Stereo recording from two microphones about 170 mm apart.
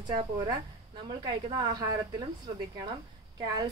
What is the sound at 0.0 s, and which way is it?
A woman's voice, 25° right (ahead or behind).